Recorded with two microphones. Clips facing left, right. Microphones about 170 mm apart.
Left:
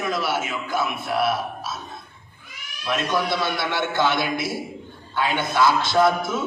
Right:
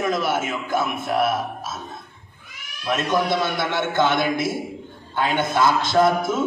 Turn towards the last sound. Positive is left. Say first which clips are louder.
# right 1 dB
turn(degrees=-50)  # may be behind; listen again after turning